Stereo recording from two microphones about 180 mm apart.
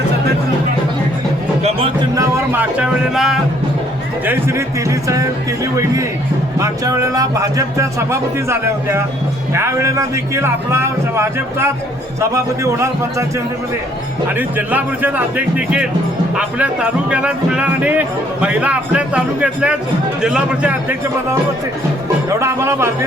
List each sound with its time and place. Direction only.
1.6 s music: 30° right (ahead or behind)
2.1 s speech: 15° right (ahead or behind)
4.3 s a man's voice: 15° right (ahead or behind)
6.6 s a man's voice: 15° right (ahead or behind)
14.3 s a man's voice: 10° right (ahead or behind)
22.4 s a man's voice: 15° right (ahead or behind)